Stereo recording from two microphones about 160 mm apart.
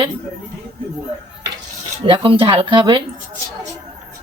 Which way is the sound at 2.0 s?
30° right (ahead or behind).